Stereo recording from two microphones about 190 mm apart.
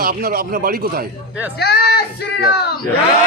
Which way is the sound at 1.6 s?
55° left (ahead or behind).